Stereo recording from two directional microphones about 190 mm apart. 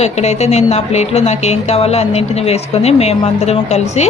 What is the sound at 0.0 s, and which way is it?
Speech, 35° left (ahead or behind).